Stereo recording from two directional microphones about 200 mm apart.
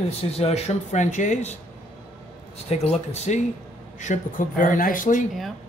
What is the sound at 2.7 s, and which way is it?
Speech, 30° left (ahead or behind).